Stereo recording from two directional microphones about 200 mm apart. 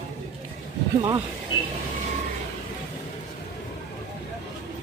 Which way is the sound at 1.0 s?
20° right (ahead or behind).